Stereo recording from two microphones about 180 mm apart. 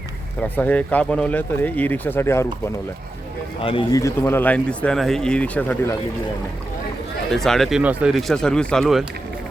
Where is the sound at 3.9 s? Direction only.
15° left (ahead or behind).